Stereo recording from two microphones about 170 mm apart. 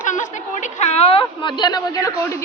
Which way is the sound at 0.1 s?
45° left (ahead or behind).